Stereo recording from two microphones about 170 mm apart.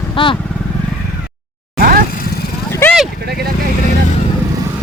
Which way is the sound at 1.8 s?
60° right (ahead or behind).